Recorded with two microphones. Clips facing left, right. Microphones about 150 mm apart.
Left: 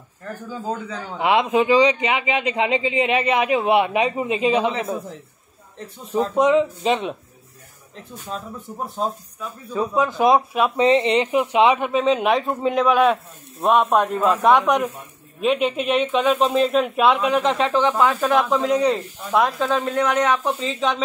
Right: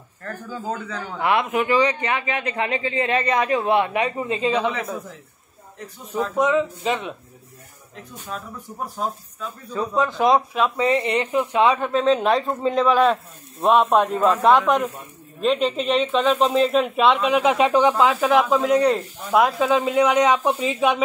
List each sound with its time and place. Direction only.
0.7 s a man's voice: 15° left (ahead or behind)
6.1 s speech: 25° left (ahead or behind)
9.7 s a man's voice: 10° left (ahead or behind); by 21.0 s 15° right (ahead or behind)